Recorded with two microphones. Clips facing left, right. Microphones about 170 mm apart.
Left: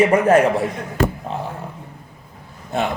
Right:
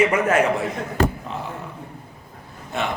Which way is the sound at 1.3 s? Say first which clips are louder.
Left 4 dB; 35° left (ahead or behind).